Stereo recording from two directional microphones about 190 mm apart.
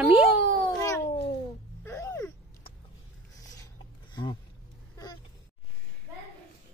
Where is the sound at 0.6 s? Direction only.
20° left (ahead or behind).